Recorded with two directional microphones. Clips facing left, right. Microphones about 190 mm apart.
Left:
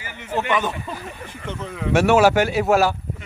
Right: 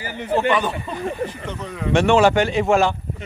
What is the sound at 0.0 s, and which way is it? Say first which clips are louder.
Speech: right 5 dB; 35° right (ahead or behind).